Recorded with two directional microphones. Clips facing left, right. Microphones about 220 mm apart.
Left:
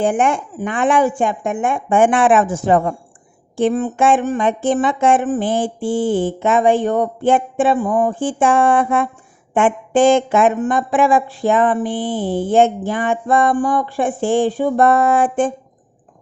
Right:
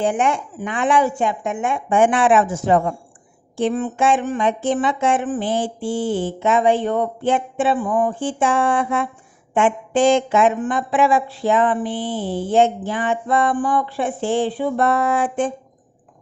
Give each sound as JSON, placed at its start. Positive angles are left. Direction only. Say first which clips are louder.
{"t": 0.0, "sound": "speech", "louder": "left 3 dB", "side_deg": 50}